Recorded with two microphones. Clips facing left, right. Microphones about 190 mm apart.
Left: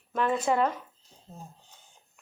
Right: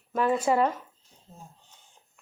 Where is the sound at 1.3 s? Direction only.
40° left (ahead or behind).